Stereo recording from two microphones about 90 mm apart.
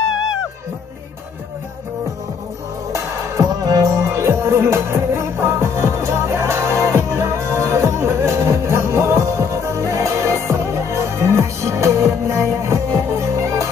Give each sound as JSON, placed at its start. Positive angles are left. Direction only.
{"t": 2.9, "sound": "music", "side_deg": -30}
{"t": 3.4, "sound": "music", "side_deg": -45}